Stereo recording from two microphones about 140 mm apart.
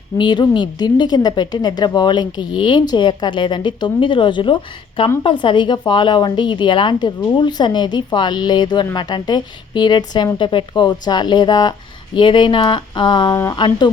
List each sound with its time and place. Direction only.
0.2 s a woman's voice: 35° left (ahead or behind)